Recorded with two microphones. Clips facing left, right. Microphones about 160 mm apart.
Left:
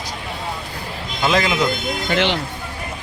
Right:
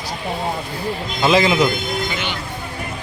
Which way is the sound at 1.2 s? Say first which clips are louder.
Right 3 dB; 5° right (ahead or behind).